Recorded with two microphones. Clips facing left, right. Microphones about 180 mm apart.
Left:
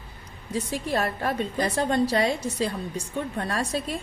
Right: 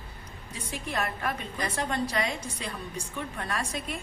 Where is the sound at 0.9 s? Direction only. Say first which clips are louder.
Left 5 dB; 30° left (ahead or behind).